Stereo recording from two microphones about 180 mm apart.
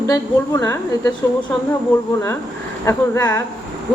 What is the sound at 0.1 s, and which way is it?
A woman's voice, 15° left (ahead or behind).